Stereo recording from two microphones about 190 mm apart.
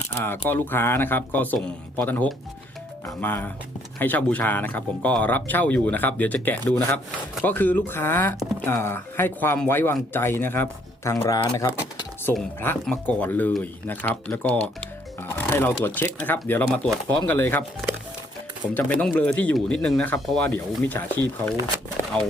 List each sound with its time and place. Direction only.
0.2 s speech: 10° left (ahead or behind)
11.2 s speech: 25° left (ahead or behind)
12.8 s speech: 5° left (ahead or behind)
18.7 s speech: 10° left (ahead or behind)
22.1 s speech: 5° left (ahead or behind)